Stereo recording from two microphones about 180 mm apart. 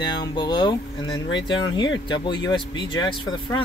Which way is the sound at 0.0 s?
25° left (ahead or behind).